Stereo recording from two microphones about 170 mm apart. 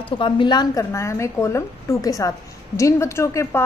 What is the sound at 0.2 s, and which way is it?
A woman's voice, 25° left (ahead or behind).